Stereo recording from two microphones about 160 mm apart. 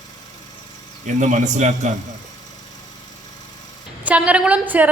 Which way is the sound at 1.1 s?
50° right (ahead or behind).